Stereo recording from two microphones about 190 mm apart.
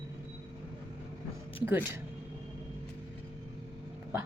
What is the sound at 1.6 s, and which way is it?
Speech, 10° right (ahead or behind).